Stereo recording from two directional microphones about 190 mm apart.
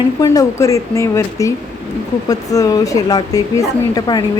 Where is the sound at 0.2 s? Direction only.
15° left (ahead or behind).